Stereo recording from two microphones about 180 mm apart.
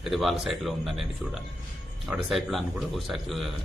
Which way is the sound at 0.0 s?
Centre (ahead or behind).